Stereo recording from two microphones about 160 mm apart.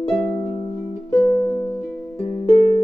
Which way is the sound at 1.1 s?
30° left (ahead or behind).